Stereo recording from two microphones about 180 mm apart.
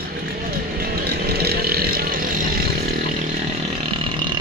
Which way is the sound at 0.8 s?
60° right (ahead or behind).